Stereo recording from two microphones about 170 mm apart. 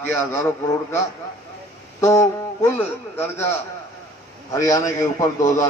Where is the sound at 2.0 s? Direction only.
15° left (ahead or behind).